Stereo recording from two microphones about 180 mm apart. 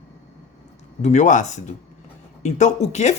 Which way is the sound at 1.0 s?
40° left (ahead or behind).